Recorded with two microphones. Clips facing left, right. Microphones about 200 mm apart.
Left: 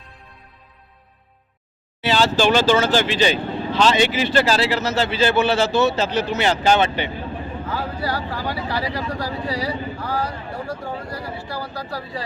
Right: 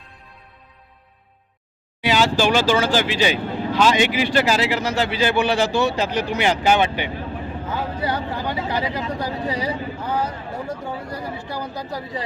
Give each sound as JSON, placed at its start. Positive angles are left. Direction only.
{"t": 2.0, "sound": "speech", "side_deg": -15}